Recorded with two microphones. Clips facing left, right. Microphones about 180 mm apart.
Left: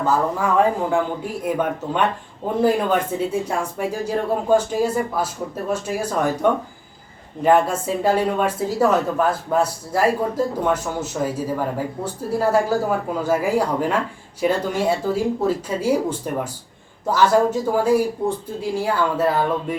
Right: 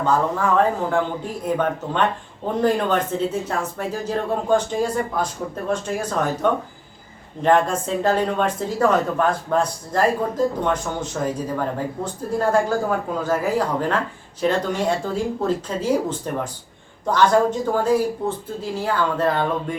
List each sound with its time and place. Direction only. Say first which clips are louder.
0.0 s speech: even; 10° left (ahead or behind)